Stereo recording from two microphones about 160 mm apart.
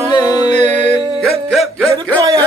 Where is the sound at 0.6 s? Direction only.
45° right (ahead or behind).